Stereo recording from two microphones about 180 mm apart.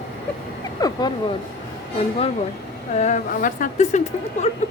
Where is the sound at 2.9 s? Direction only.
40° left (ahead or behind).